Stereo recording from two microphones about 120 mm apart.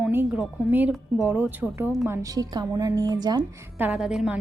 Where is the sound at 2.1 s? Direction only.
25° right (ahead or behind).